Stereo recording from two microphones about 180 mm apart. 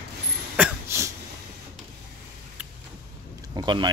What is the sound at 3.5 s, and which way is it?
Speech, 25° right (ahead or behind).